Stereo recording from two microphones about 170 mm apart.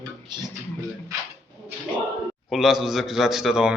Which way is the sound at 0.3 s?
25° right (ahead or behind).